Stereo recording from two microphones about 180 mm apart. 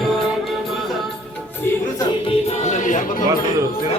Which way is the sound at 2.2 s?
40° left (ahead or behind).